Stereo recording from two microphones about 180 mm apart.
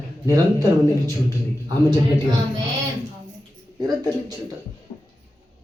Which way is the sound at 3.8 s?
20° right (ahead or behind).